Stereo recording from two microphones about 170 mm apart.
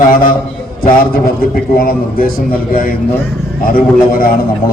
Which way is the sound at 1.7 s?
55° left (ahead or behind).